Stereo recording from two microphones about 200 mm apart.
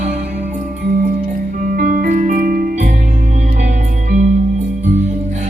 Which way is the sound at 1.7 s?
45° right (ahead or behind).